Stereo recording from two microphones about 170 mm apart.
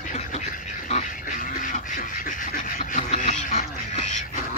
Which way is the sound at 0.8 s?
45° left (ahead or behind).